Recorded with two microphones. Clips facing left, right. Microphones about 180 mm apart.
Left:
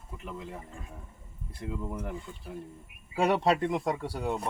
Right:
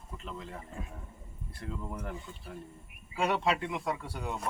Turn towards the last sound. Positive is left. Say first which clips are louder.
# left 5 dB
turn(degrees=30)  # may be behind; listen again after turning